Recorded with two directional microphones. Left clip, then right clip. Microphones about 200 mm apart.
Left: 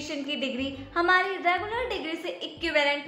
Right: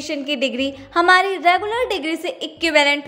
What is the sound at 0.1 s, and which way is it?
A woman's voice, 45° right (ahead or behind).